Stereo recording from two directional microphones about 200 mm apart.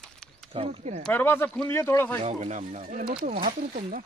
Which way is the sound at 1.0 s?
10° left (ahead or behind).